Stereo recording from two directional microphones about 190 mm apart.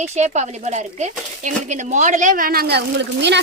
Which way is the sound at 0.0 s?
35° right (ahead or behind).